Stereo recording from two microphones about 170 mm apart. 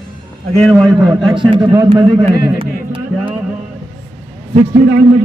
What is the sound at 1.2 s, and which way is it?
Speech, 30° right (ahead or behind).